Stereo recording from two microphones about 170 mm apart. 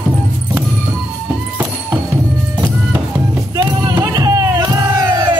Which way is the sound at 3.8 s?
25° right (ahead or behind).